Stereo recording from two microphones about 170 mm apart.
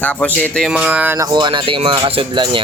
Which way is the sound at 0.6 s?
5° right (ahead or behind).